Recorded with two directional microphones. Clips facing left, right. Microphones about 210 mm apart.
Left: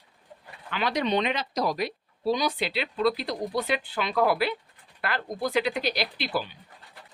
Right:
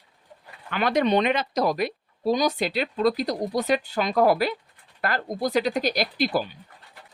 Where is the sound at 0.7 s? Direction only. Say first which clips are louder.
Right 5 dB; 50° right (ahead or behind).